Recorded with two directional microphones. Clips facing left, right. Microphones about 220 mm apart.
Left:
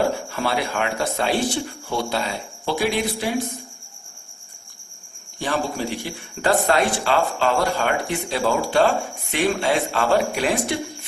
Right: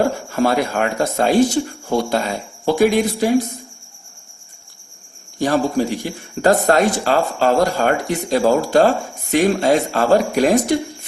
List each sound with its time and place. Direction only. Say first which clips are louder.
0.3 s speech: right 6 dB; 45° right (ahead or behind)
5.4 s speech: right 7 dB; 40° right (ahead or behind)